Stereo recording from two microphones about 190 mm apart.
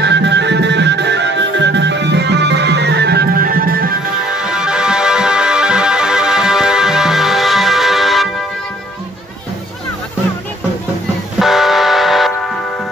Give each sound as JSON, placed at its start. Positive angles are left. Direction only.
{"t": 0.0, "sound": "music", "side_deg": -65}
{"t": 4.4, "sound": "music", "side_deg": -5}
{"t": 11.3, "sound": "music", "side_deg": 0}